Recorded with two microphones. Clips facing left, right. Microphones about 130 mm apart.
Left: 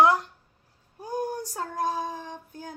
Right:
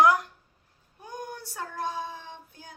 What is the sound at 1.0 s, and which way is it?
Child singing, 35° left (ahead or behind).